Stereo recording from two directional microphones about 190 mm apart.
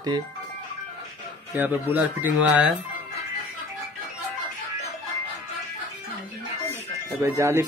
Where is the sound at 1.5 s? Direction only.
10° right (ahead or behind).